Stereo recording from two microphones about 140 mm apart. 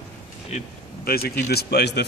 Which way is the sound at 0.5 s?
55° left (ahead or behind).